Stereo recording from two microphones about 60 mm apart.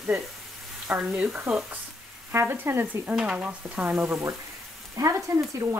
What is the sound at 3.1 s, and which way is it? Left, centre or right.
Stir, centre.